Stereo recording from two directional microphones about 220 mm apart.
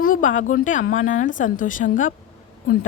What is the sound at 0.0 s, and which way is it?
Speech, 35° left (ahead or behind).